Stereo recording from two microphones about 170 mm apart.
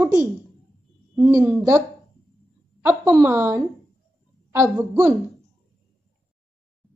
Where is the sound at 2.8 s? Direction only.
15° right (ahead or behind).